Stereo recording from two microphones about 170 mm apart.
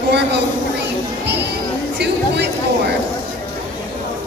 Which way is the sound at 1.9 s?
80° right.